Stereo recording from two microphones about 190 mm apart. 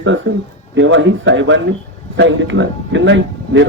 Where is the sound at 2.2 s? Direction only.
75° right (ahead or behind).